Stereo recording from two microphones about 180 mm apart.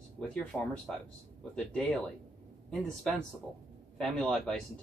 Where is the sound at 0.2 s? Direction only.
5° left (ahead or behind).